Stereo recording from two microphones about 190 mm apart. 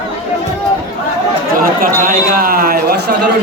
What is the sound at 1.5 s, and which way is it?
A man's voice, 50° right (ahead or behind).